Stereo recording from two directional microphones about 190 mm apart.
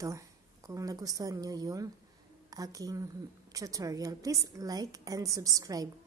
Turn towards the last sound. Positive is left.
turn(degrees=-15)  # may be behind; listen again after turning